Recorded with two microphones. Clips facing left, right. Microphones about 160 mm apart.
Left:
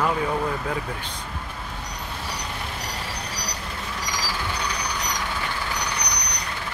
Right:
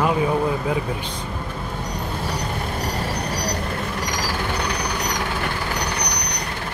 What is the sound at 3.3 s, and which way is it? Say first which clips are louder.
Vehicle: right 9 dB; 55° right (ahead or behind).